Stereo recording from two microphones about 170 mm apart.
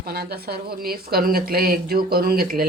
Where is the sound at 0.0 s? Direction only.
65° right (ahead or behind).